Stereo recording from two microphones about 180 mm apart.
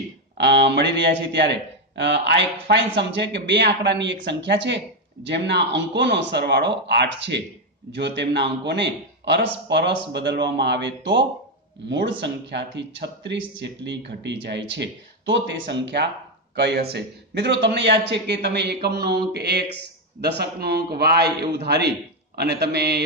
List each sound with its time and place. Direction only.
0.4 s a man's voice: 75° right (ahead or behind)